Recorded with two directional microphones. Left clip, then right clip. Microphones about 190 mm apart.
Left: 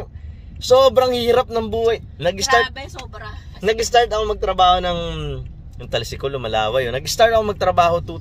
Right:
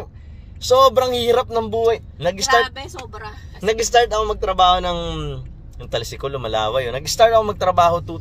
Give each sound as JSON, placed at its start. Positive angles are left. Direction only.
{"t": 0.6, "sound": "speech", "side_deg": 20}
{"t": 3.6, "sound": "speech", "side_deg": 20}